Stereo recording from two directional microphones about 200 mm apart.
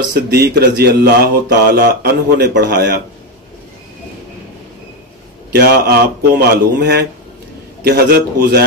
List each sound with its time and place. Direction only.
0.1 s speech: 50° right (ahead or behind)
5.5 s speech: 50° right (ahead or behind)